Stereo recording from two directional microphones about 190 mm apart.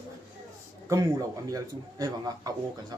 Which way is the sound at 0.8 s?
20° right (ahead or behind).